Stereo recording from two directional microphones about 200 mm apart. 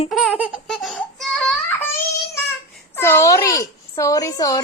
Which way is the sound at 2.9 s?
10° left (ahead or behind).